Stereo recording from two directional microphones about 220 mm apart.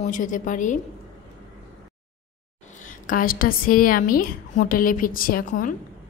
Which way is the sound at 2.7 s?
35° left (ahead or behind).